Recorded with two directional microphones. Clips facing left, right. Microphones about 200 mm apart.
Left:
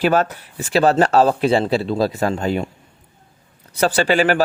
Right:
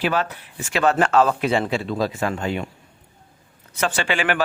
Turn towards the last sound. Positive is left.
turn(degrees=40)  # may be behind; listen again after turning